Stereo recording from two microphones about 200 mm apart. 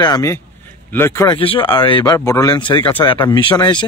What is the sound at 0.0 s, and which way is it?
Speech, 20° left (ahead or behind).